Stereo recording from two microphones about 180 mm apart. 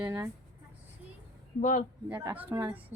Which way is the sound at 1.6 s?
40° left (ahead or behind).